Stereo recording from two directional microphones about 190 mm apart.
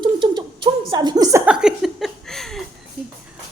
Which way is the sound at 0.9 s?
20° right (ahead or behind).